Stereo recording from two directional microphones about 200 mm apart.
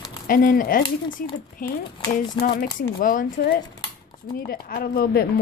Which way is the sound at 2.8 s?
40° left (ahead or behind).